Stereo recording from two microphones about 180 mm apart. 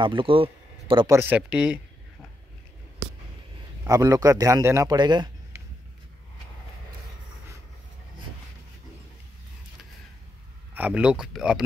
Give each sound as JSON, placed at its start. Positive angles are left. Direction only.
{"t": 0.0, "sound": "speech", "side_deg": -30}
{"t": 1.1, "sound": "speech", "side_deg": -10}
{"t": 3.8, "sound": "a man's voice", "side_deg": -20}
{"t": 10.7, "sound": "speech", "side_deg": -10}